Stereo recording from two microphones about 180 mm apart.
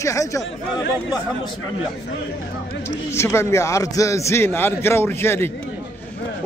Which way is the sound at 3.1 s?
15° left (ahead or behind).